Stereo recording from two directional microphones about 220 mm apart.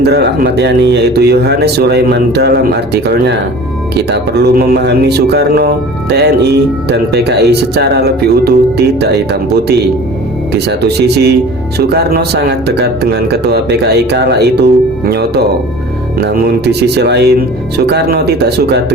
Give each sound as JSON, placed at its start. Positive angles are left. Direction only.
{"t": 0.0, "sound": "a man's voice", "side_deg": -50}
{"t": 10.5, "sound": "a man's voice", "side_deg": -50}